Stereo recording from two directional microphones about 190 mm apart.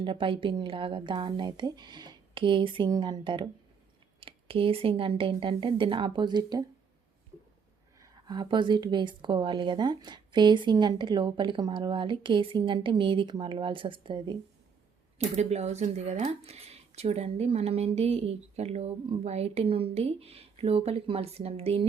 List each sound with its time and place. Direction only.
0.0 s a woman's voice: 25° right (ahead or behind)
7.9 s a woman's voice: 20° right (ahead or behind)
15.4 s speech: 35° right (ahead or behind)